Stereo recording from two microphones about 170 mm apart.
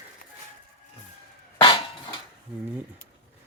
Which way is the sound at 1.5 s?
30° left (ahead or behind).